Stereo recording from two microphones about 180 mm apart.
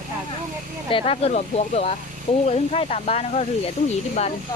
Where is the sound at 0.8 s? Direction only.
30° left (ahead or behind).